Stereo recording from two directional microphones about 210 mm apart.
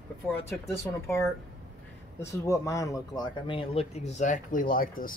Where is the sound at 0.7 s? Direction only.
10° left (ahead or behind).